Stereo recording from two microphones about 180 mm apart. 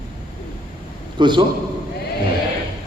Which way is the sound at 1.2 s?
25° right (ahead or behind).